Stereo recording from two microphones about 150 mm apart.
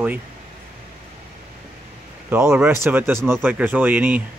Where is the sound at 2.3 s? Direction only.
15° right (ahead or behind).